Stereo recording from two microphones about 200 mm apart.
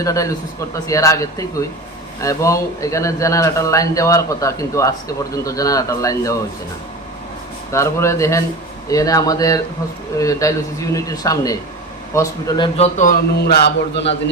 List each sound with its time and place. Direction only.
0.0 s a man's voice: 15° left (ahead or behind)
7.7 s a man's voice: 15° left (ahead or behind); by 14.0 s 55° left (ahead or behind)